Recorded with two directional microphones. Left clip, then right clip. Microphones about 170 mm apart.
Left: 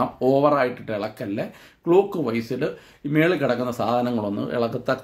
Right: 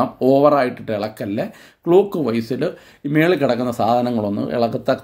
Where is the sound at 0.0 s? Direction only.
35° right (ahead or behind).